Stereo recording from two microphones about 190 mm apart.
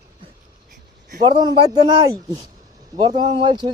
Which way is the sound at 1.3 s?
25° right (ahead or behind).